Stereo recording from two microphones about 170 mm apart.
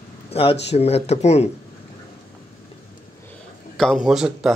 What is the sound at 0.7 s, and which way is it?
Speech, 35° left (ahead or behind).